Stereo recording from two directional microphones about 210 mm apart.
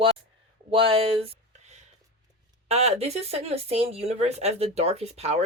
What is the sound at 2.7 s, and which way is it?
Speech, 30° right (ahead or behind).